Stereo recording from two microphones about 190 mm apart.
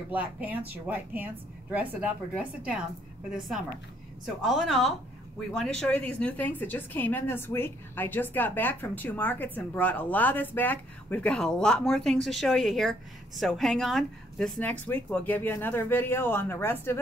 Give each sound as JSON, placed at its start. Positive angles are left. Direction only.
{"t": 0.1, "sound": "a woman's voice", "side_deg": -10}